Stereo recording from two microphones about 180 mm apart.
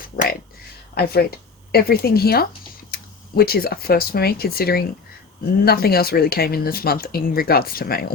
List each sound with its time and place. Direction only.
0.0 s speech: 55° left (ahead or behind)